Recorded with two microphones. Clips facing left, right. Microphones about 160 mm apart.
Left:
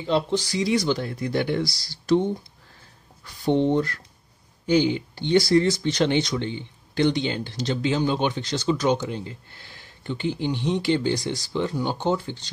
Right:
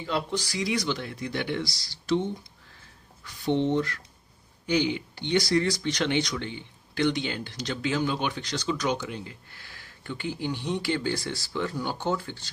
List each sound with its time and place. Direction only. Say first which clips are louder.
0.0 s speech: left 6 dB; 25° left (ahead or behind); by 2.2 s 40° left (ahead or behind)
3.4 s speech: left 4 dB; 40° left (ahead or behind); by 12.4 s 20° left (ahead or behind)